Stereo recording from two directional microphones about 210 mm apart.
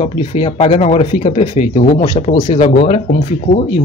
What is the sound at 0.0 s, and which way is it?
Speech, 30° left (ahead or behind).